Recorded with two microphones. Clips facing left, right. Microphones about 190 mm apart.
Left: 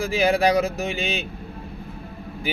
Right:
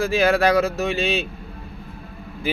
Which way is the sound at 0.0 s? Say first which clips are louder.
Right 2 dB; 15° left (ahead or behind).